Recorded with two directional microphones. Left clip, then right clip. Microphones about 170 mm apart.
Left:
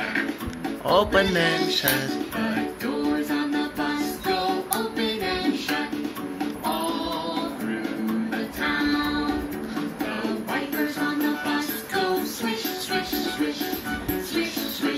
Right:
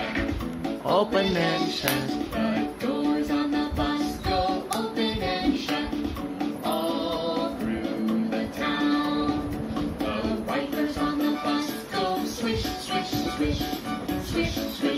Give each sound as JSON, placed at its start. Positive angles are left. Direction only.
{"t": 0.8, "sound": "music", "side_deg": 5}